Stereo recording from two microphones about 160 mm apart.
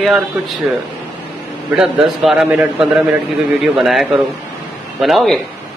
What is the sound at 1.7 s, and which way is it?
A man's voice, 5° right (ahead or behind).